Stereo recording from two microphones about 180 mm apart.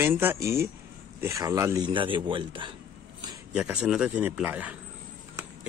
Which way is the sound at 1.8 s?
30° right (ahead or behind).